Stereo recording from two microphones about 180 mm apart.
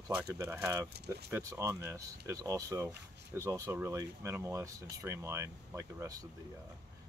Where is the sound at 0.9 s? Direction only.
65° right (ahead or behind).